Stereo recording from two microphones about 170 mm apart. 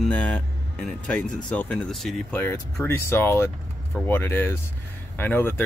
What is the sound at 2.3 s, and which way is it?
Speech, 10° left (ahead or behind).